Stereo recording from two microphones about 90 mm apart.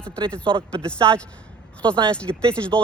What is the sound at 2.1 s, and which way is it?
Speech, 15° left (ahead or behind).